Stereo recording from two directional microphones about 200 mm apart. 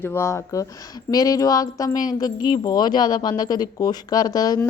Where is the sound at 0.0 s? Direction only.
10° left (ahead or behind).